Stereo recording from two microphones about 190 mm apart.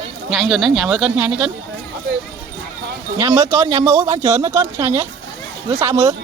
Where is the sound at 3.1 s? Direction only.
20° right (ahead or behind).